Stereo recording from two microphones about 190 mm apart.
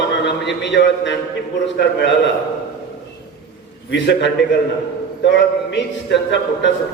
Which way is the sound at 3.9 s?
65° left (ahead or behind).